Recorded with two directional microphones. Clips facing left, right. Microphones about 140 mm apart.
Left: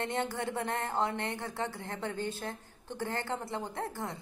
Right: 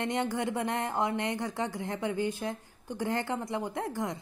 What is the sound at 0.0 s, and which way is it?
A woman's voice, 15° right (ahead or behind).